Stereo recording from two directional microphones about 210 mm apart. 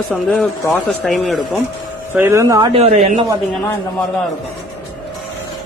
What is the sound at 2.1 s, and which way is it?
Speech, 10° right (ahead or behind).